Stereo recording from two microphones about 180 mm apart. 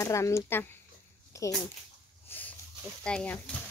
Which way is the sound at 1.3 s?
15° left (ahead or behind).